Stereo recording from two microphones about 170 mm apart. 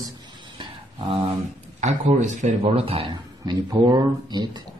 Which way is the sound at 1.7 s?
40° right (ahead or behind).